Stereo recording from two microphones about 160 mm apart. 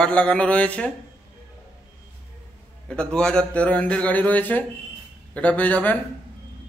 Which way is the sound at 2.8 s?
5° left (ahead or behind).